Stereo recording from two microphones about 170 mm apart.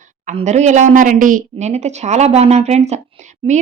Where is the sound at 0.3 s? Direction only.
40° right (ahead or behind).